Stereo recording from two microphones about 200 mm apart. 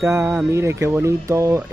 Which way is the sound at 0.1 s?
10° right (ahead or behind).